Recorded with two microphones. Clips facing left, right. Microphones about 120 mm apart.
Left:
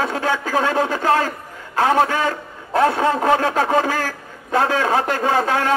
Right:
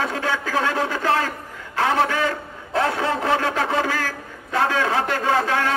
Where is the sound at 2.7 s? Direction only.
40° left (ahead or behind).